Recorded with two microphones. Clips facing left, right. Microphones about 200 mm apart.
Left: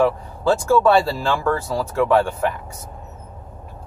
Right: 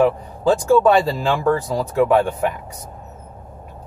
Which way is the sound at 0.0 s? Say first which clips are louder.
Right 2 dB; 15° right (ahead or behind).